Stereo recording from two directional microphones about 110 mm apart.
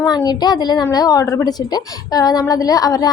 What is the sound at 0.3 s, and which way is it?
A woman's voice, 40° left (ahead or behind).